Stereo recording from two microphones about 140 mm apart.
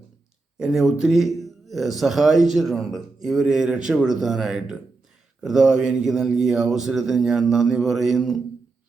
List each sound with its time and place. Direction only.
0.6 s speech: 5° right (ahead or behind)